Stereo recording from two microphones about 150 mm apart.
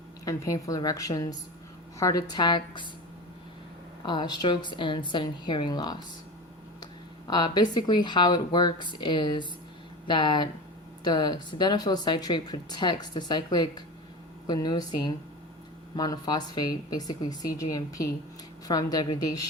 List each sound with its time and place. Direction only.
0.3 s speech: 20° left (ahead or behind)
4.0 s a woman's voice: 30° left (ahead or behind)
7.3 s a woman's voice: 25° left (ahead or behind)